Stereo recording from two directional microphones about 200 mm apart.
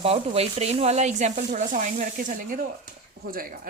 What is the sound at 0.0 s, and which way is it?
Speech, 30° right (ahead or behind).